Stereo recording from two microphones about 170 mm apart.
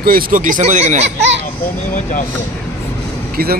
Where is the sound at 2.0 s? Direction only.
50° left (ahead or behind).